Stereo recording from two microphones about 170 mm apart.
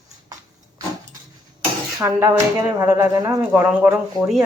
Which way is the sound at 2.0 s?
20° right (ahead or behind).